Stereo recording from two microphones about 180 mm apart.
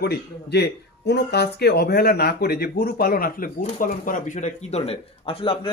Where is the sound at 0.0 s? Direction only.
65° left (ahead or behind).